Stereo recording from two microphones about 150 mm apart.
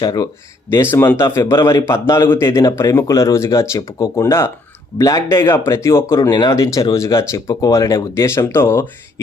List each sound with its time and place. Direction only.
0.0 s a man's voice: 25° left (ahead or behind)
0.7 s a man's voice: 15° left (ahead or behind)